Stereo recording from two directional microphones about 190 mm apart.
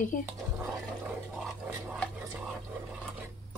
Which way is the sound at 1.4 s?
Centre (ahead or behind).